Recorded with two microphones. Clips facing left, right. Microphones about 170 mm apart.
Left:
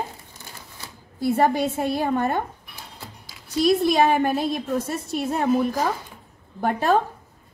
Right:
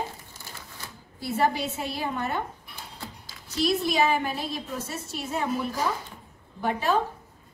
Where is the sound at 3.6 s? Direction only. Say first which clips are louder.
Left 6 dB; 55° left (ahead or behind).